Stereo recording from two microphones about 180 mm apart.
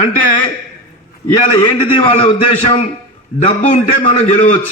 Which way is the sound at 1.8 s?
30° left (ahead or behind).